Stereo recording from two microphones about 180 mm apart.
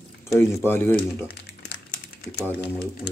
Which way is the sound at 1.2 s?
60° left (ahead or behind).